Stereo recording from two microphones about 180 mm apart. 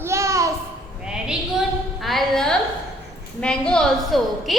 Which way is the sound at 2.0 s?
Centre (ahead or behind).